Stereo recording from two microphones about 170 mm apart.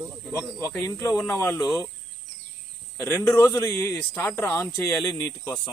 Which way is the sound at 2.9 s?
15° left (ahead or behind).